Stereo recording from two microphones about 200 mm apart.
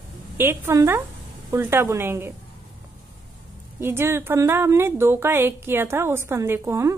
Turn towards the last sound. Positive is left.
turn(degrees=-15)  # may be behind; listen again after turning